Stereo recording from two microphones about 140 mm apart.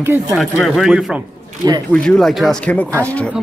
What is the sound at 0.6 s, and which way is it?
Speech, centre (ahead or behind).